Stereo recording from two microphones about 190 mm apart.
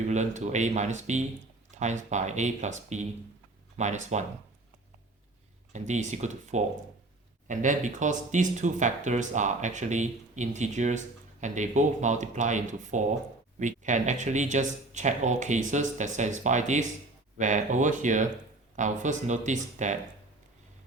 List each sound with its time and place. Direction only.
0.1 s speech: 40° right (ahead or behind)
5.7 s speech: 40° right (ahead or behind)